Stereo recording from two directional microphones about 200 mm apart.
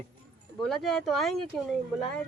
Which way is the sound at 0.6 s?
Centre (ahead or behind).